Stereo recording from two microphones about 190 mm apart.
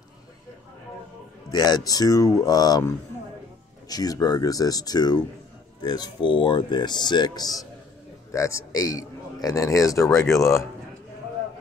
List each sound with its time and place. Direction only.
1.5 s speech: 20° left (ahead or behind)
3.9 s a man's voice: 20° left (ahead or behind)